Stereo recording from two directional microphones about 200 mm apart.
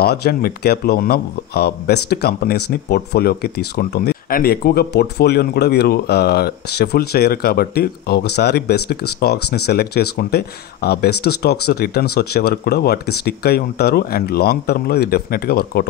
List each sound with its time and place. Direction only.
0.0 s speech: 50° left (ahead or behind)